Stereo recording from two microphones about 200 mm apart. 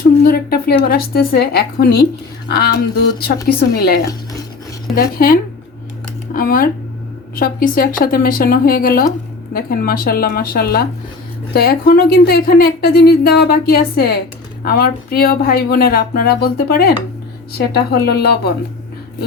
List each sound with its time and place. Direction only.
0.3 s speech: 50° left (ahead or behind)
4.9 s speech: 50° left (ahead or behind)